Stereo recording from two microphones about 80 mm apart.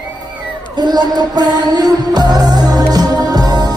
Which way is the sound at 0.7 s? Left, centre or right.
Right.